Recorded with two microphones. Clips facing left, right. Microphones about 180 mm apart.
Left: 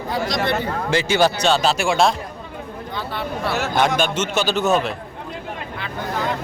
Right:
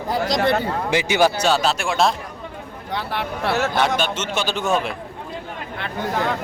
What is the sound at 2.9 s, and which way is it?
Speech, 70° right (ahead or behind).